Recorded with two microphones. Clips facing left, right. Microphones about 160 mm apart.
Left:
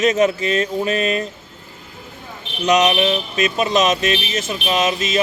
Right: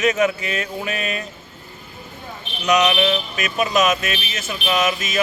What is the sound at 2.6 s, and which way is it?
Speech, 25° left (ahead or behind).